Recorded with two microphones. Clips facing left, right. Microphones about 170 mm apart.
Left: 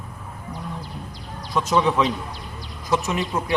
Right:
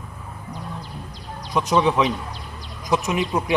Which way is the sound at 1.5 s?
15° right (ahead or behind).